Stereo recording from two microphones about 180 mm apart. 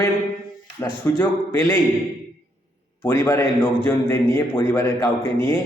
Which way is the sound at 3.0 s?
15° left (ahead or behind).